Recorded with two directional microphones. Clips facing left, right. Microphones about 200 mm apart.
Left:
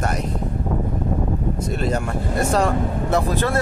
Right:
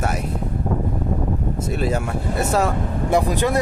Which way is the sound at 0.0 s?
5° right (ahead or behind).